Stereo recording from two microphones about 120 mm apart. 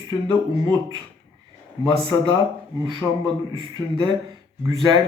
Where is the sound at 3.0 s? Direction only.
5° left (ahead or behind).